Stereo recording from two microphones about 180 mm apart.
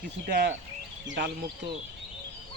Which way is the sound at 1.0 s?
75° right (ahead or behind).